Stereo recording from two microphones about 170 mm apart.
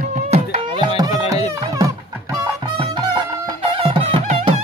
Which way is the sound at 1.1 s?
35° left (ahead or behind).